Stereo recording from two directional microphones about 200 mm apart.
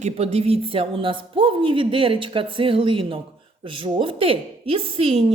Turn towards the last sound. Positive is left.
turn(degrees=-30)  # may be behind; listen again after turning